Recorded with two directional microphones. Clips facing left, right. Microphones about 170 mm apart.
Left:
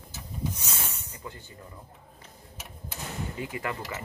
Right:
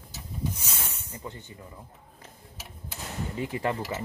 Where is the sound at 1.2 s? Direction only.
20° right (ahead or behind).